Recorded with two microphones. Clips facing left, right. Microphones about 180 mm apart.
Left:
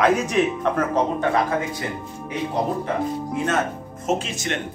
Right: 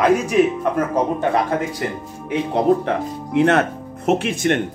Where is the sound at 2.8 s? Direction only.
70° right (ahead or behind).